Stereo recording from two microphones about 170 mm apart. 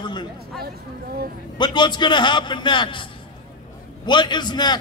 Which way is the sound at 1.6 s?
25° left (ahead or behind).